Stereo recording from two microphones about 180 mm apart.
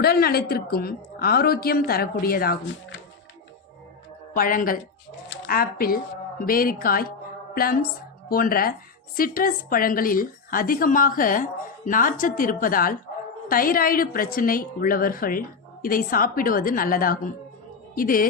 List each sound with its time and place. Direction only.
0.0 s a woman's voice: 60° left (ahead or behind)
4.4 s a woman's voice: 50° left (ahead or behind)